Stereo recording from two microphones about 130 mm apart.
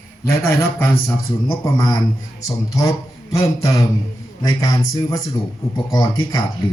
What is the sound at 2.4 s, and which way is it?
A man's voice, 25° left (ahead or behind).